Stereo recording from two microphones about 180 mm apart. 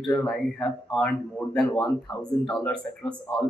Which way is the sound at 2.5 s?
Centre (ahead or behind).